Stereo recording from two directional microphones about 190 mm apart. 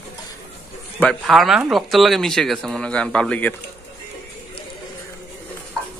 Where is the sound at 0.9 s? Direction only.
5° left (ahead or behind).